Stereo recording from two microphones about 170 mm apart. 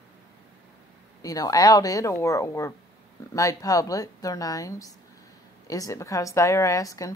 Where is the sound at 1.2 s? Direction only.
20° left (ahead or behind).